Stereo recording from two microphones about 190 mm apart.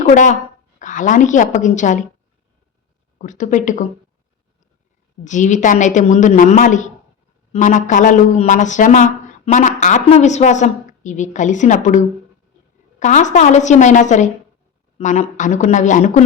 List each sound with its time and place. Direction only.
0.0 s a woman's voice: 40° left (ahead or behind)
3.2 s a woman's voice: 40° left (ahead or behind)
5.2 s a woman's voice: 40° left (ahead or behind)